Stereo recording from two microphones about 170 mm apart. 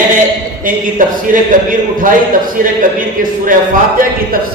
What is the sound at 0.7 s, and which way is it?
A man's voice, 50° right (ahead or behind).